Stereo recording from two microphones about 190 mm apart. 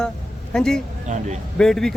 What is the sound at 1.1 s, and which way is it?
Speech, 40° right (ahead or behind).